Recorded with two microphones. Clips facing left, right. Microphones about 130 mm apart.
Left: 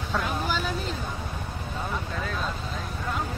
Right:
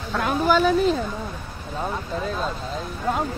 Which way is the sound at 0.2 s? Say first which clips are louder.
Right 9 dB; 70° right (ahead or behind).